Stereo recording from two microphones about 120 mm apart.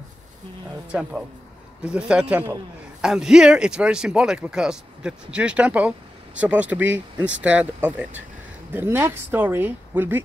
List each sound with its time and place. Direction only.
1.9 s speech: 5° right (ahead or behind)